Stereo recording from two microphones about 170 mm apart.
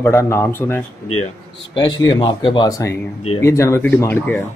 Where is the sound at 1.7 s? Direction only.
25° left (ahead or behind).